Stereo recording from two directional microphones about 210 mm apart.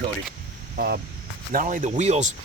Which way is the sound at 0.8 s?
45° right (ahead or behind).